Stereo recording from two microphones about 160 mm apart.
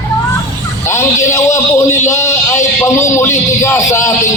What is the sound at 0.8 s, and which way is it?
A man's voice, 15° left (ahead or behind).